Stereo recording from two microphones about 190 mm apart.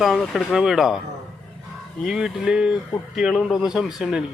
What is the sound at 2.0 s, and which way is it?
Speech, 5° right (ahead or behind).